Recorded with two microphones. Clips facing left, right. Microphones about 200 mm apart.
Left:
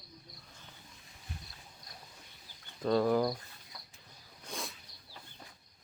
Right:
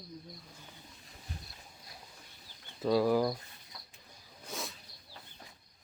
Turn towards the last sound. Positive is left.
turn(degrees=0)  # may be behind; listen again after turning